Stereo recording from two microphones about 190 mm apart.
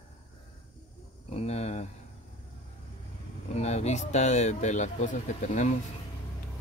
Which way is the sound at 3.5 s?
35° left (ahead or behind).